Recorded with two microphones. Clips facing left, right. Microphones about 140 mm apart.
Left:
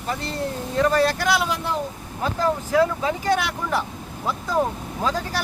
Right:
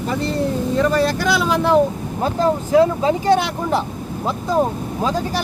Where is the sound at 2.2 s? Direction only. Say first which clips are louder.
Right 4 dB; 25° right (ahead or behind).